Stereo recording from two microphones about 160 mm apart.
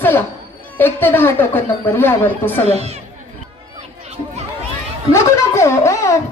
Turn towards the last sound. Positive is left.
turn(degrees=20)  # may be behind; listen again after turning